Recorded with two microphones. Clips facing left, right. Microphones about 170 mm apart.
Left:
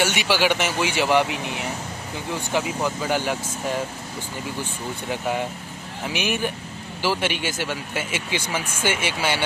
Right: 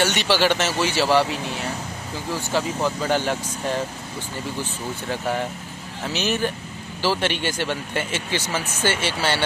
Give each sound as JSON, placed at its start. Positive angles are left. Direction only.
{"t": 0.0, "sound": "speech", "side_deg": 10}